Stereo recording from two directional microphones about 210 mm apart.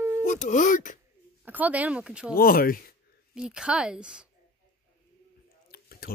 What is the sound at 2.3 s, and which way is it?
Speech, 45° left (ahead or behind).